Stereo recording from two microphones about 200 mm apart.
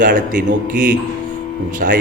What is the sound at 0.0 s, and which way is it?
A man's voice, 40° right (ahead or behind).